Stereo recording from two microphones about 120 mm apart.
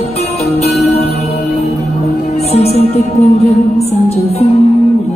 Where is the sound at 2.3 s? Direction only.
60° left (ahead or behind).